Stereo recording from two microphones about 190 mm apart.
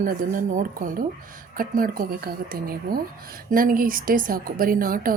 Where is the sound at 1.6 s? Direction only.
50° right (ahead or behind).